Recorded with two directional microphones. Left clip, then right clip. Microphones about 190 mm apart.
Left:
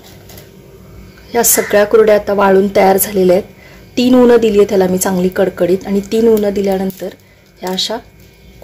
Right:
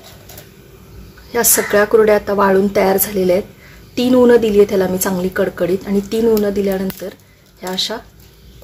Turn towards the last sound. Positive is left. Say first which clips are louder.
# left 3 dB
turn(degrees=15)  # may be behind; listen again after turning